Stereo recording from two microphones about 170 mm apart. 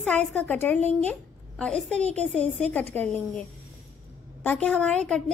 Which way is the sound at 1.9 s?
40° right (ahead or behind).